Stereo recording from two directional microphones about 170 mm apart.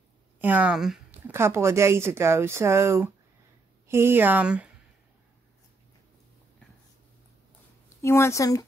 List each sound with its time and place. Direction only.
0.4 s speech: 10° right (ahead or behind)
1.3 s speech: 15° right (ahead or behind)
8.0 s a woman's voice: 15° left (ahead or behind)